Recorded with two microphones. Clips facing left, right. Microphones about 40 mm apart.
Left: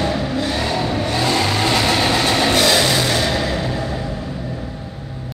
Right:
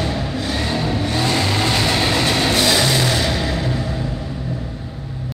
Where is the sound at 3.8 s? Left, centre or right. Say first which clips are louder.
Left 1 dB; centre.